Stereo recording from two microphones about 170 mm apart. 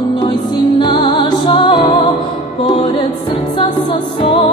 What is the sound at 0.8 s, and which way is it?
Music, 30° left (ahead or behind).